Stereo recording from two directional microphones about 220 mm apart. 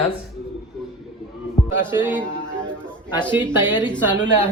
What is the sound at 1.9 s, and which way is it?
Speech, 10° right (ahead or behind).